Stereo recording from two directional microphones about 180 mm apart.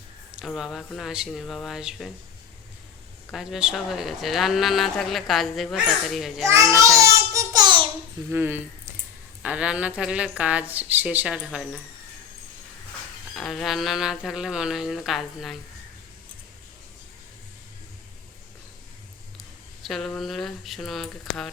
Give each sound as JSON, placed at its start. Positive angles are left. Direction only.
{"t": 0.3, "sound": "speech", "side_deg": -5}
{"t": 3.3, "sound": "speech", "side_deg": -5}
{"t": 6.5, "sound": "child singing", "side_deg": -15}
{"t": 8.3, "sound": "a woman's voice", "side_deg": -10}
{"t": 13.3, "sound": "speech", "side_deg": 0}
{"t": 19.8, "sound": "speech", "side_deg": 0}